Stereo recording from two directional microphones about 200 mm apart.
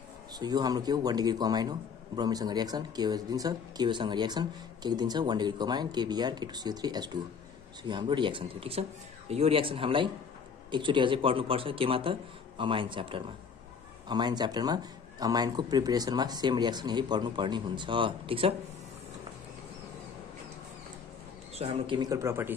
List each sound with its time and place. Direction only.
0.4 s a man's voice: 20° right (ahead or behind)
21.5 s a man's voice: 25° right (ahead or behind)